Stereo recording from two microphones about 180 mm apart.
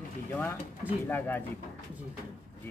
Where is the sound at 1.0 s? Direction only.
10° left (ahead or behind).